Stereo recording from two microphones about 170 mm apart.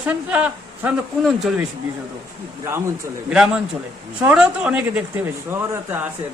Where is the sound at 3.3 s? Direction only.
5° right (ahead or behind).